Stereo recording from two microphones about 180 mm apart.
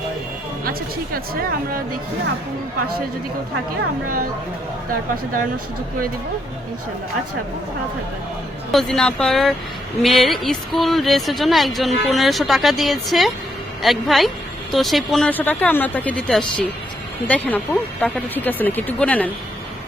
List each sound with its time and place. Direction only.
0.6 s speech: 55° right (ahead or behind)
8.7 s a woman's voice: centre (ahead or behind)